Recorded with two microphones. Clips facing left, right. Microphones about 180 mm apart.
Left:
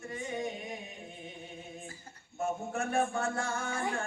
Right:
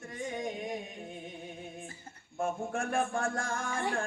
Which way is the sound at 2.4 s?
50° right (ahead or behind).